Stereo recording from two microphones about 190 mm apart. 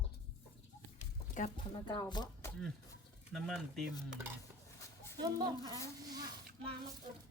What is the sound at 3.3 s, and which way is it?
Speech, centre (ahead or behind).